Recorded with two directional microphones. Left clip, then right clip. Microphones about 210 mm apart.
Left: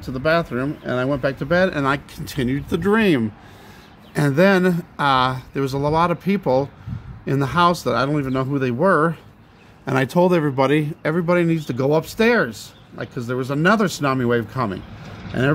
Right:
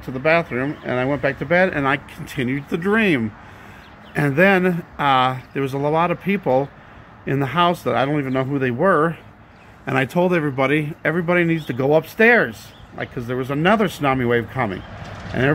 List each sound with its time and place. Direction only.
0.1 s speech: 5° left (ahead or behind)
9.8 s a man's voice: 20° left (ahead or behind)